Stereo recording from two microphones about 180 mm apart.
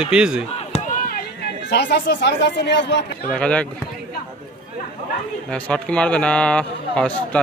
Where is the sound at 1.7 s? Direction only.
70° left (ahead or behind).